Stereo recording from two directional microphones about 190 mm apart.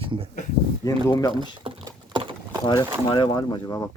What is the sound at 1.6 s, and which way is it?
Typing, 25° right (ahead or behind).